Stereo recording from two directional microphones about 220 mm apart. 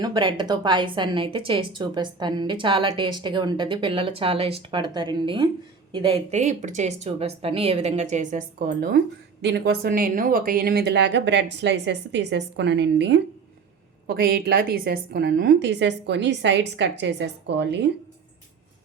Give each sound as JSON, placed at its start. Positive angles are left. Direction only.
{"t": 0.0, "sound": "a woman's voice", "side_deg": -20}